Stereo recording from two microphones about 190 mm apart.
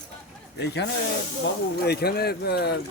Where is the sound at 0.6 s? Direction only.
60° left (ahead or behind).